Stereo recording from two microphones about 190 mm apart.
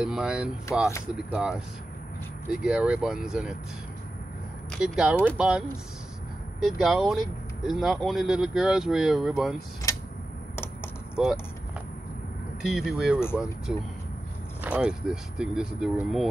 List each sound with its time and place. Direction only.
0.0 s speech: 5° right (ahead or behind)
2.6 s speech: 5° right (ahead or behind)
4.6 s speech: 5° right (ahead or behind)
9.9 s tick-tock: 15° left (ahead or behind)
11.2 s speech: centre (ahead or behind)
12.6 s speech: 5° right (ahead or behind)
13.2 s speech: 10° left (ahead or behind)
14.6 s speech: 5° right (ahead or behind)